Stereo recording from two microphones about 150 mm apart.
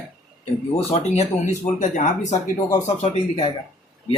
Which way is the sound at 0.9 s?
45° left (ahead or behind).